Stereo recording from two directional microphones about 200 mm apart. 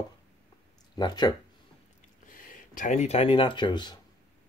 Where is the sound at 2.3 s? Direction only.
40° left (ahead or behind); by 4.0 s 20° left (ahead or behind).